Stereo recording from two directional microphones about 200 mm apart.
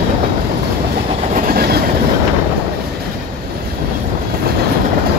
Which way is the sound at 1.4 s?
50° right (ahead or behind).